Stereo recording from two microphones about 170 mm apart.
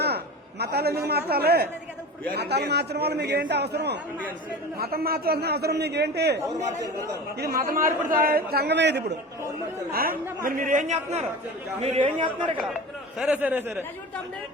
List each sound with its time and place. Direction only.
0.6 s a man's voice: 70° right (ahead or behind)
4.8 s a man's voice: 65° right (ahead or behind)
7.3 s a man's voice: 60° right (ahead or behind); by 9.1 s 85° right
9.9 s a man's voice: 60° right (ahead or behind)
11.8 s a man's voice: 35° right (ahead or behind)
13.1 s speech: 5° right (ahead or behind)